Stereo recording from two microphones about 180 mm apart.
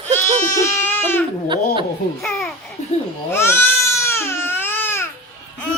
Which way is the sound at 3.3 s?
15° left (ahead or behind).